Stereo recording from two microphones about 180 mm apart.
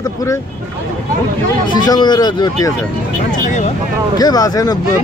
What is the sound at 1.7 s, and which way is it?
Speech, 25° left (ahead or behind).